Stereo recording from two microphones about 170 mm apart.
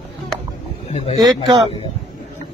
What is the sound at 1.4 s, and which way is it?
Speech, 30° right (ahead or behind).